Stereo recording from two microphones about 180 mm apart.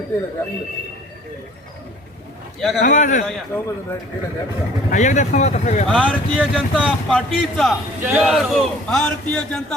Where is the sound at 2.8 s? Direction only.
45° left (ahead or behind).